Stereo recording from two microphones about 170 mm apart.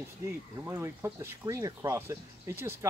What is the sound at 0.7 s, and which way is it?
Speech, 15° right (ahead or behind).